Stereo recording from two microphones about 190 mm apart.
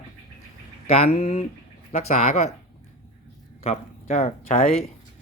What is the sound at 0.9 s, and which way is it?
Speech, 35° left (ahead or behind).